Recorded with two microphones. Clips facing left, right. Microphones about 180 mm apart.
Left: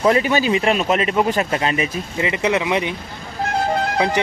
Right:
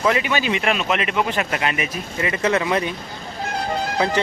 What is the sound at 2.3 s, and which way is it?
Speech, 15° left (ahead or behind).